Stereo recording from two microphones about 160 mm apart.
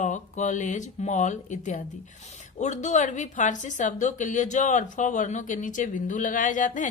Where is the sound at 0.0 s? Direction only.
50° left (ahead or behind).